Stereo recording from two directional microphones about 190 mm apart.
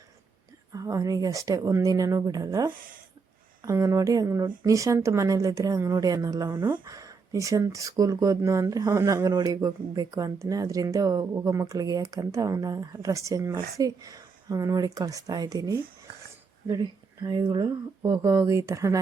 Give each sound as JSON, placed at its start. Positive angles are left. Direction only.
{"t": 0.7, "sound": "a woman's voice", "side_deg": -15}